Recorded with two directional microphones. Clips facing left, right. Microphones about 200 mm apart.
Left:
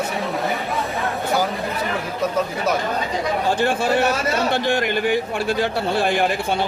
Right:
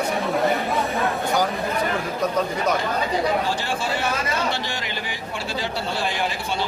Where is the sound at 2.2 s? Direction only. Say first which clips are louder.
Left 1 dB; 5° left (ahead or behind).